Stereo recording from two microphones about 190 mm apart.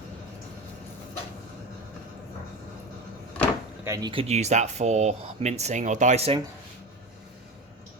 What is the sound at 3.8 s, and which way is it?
Speech, 20° right (ahead or behind).